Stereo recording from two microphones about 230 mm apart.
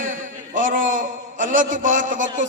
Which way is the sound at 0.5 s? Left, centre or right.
Right.